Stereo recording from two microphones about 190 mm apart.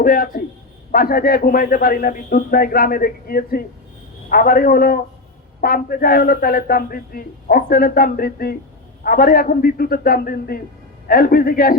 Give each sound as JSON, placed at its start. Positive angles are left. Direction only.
{"t": 0.0, "sound": "a man's voice", "side_deg": 50}